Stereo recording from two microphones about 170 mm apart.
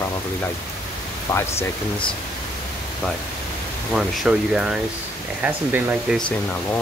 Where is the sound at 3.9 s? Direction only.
Centre (ahead or behind).